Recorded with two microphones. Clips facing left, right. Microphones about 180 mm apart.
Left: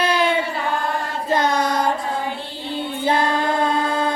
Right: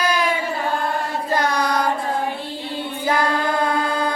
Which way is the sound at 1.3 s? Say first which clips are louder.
Left 2 dB; 20° left (ahead or behind).